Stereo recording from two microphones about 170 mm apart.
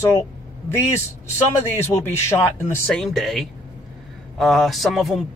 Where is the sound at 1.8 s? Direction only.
15° left (ahead or behind).